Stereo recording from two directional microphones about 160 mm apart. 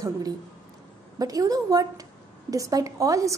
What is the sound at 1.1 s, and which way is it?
A woman's voice, 20° right (ahead or behind).